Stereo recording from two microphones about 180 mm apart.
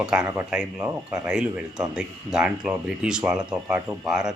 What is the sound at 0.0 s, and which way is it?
Speech, 5° right (ahead or behind).